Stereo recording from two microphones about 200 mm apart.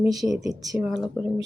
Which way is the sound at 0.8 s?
Centre (ahead or behind).